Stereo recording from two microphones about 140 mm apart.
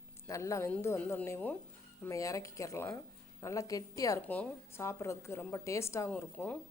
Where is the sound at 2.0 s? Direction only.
20° left (ahead or behind).